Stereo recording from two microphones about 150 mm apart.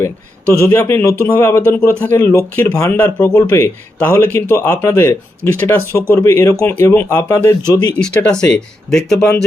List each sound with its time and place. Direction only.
0.6 s a man's voice: 15° left (ahead or behind)
7.9 s speech: 5° left (ahead or behind)